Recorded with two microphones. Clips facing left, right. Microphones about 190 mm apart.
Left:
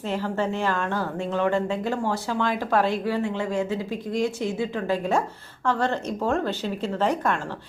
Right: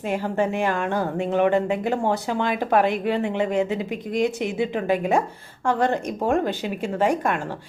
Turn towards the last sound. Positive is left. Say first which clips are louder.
# right 2 dB
turn(degrees=-15)  # may be behind; listen again after turning